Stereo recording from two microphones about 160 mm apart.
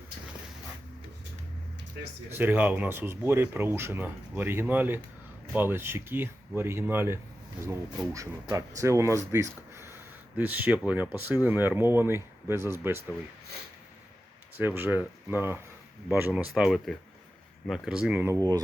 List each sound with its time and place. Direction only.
2.3 s speech: 10° right (ahead or behind)
8.5 s speech: 20° right (ahead or behind)
14.6 s speech: 10° right (ahead or behind)